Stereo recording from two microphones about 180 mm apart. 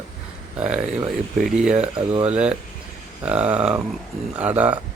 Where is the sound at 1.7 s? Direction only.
30° right (ahead or behind).